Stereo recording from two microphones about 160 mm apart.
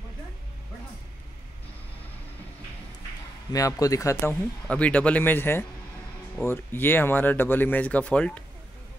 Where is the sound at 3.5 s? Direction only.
20° left (ahead or behind).